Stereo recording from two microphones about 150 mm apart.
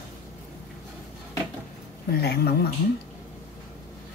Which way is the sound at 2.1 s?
90° left.